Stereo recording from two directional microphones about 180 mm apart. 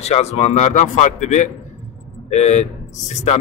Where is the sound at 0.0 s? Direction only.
35° left (ahead or behind).